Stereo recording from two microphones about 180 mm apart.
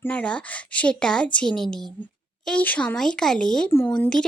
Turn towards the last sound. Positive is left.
turn(degrees=5)  # may be behind; listen again after turning